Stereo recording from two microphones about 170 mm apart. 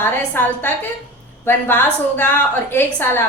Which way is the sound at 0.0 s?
10° left (ahead or behind).